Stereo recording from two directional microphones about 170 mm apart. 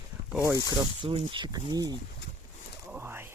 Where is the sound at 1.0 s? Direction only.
35° right (ahead or behind).